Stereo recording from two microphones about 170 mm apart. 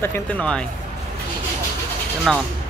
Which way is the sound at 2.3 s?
Centre (ahead or behind).